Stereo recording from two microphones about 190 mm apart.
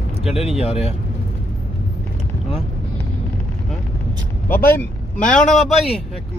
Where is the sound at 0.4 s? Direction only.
30° left (ahead or behind).